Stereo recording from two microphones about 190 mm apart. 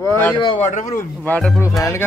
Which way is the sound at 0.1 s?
10° left (ahead or behind).